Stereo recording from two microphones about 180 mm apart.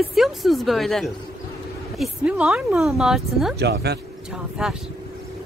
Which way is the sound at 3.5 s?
65° right (ahead or behind).